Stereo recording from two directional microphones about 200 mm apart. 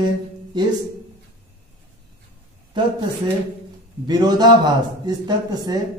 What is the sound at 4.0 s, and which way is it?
A woman's voice, 20° right (ahead or behind).